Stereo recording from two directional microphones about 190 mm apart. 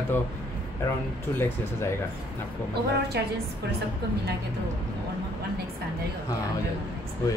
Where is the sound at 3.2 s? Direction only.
60° right (ahead or behind).